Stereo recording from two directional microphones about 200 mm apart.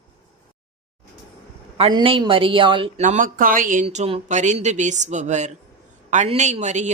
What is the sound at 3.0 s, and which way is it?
A man's voice, 40° right (ahead or behind).